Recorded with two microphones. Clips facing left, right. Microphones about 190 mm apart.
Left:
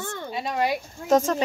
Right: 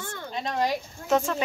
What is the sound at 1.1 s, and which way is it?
Speech, 45° left (ahead or behind).